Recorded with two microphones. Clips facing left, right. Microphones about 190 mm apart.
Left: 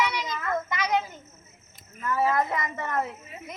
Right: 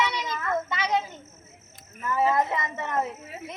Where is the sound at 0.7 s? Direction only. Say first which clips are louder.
Left 2 dB; 25° right (ahead or behind).